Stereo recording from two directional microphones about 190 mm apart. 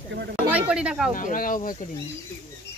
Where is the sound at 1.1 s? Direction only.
45° left (ahead or behind).